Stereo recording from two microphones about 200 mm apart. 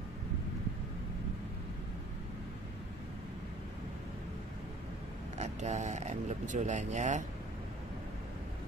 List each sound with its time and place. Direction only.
5.4 s speech: 35° right (ahead or behind)